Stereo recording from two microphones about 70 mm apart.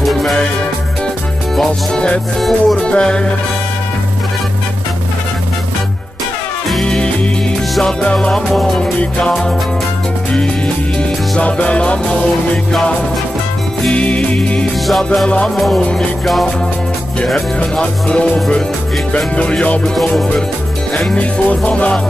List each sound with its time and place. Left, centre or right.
0.0 s music: centre
2.4 s music: centre
6.7 s music: centre
8.5 s music: centre
11.0 s music: centre
13.8 s music: centre
17.6 s music: centre
21.0 s music: centre